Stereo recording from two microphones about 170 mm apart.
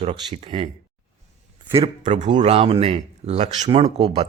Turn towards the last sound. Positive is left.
turn(degrees=-30)  # may be behind; listen again after turning